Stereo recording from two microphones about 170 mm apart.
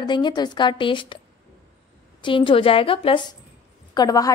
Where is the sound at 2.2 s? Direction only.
30° left (ahead or behind).